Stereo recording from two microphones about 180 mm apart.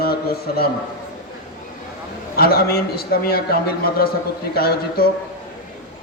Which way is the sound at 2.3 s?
55° left (ahead or behind).